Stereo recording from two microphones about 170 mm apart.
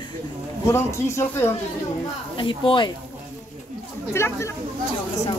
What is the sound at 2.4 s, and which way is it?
Speech, 30° left (ahead or behind).